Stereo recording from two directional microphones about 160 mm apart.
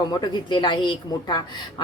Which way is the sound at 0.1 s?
25° left (ahead or behind).